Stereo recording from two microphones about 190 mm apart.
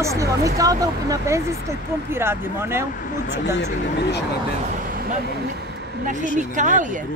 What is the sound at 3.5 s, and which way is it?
Speech, 60° left (ahead or behind).